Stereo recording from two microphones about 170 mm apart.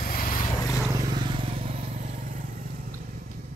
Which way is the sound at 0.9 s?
25° right (ahead or behind).